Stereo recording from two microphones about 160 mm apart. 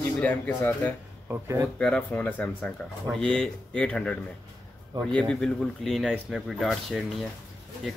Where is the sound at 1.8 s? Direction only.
5° left (ahead or behind).